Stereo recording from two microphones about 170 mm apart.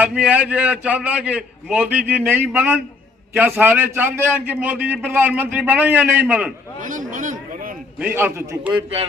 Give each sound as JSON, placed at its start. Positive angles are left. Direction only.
{"t": 0.0, "sound": "a man's voice", "side_deg": -10}
{"t": 6.8, "sound": "speech", "side_deg": -50}
{"t": 8.0, "sound": "a man's voice", "side_deg": -10}